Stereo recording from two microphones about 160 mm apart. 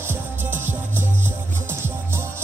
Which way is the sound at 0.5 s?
15° right (ahead or behind).